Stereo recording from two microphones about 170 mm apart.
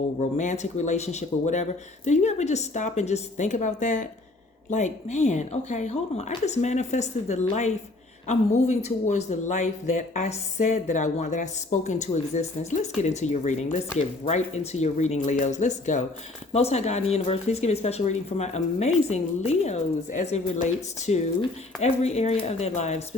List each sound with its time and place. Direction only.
0.3 s speech: 45° left (ahead or behind)